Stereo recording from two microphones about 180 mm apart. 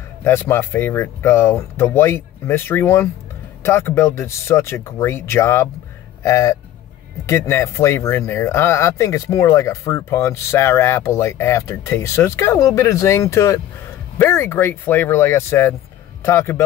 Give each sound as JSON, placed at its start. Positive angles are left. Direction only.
{"t": 0.2, "sound": "speech", "side_deg": 15}